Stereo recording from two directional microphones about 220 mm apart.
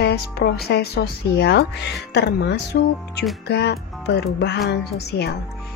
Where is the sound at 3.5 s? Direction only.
50° left (ahead or behind).